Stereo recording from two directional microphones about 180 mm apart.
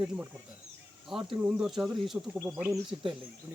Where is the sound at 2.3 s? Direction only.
15° right (ahead or behind).